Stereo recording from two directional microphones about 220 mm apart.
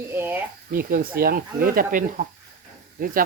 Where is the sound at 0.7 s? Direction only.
40° right (ahead or behind).